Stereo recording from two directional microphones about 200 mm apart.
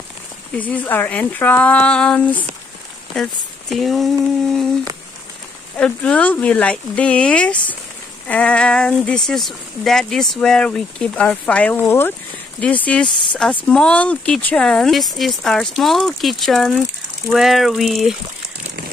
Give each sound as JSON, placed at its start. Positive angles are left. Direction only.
{"t": 0.6, "sound": "speech", "side_deg": 10}
{"t": 5.8, "sound": "speech", "side_deg": 5}